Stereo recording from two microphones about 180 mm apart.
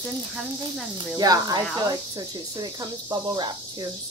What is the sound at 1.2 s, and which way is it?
Speech, 20° right (ahead or behind).